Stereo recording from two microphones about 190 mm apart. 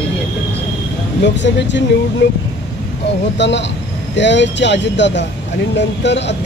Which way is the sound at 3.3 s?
70° left (ahead or behind).